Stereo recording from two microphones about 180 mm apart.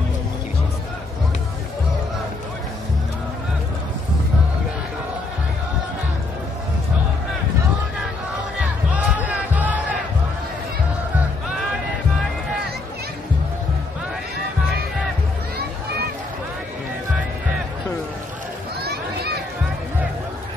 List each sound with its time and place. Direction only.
8.5 s music: 10° right (ahead or behind)
15.5 s a sound: 60° right (ahead or behind)
18.8 s children playing: 60° right (ahead or behind)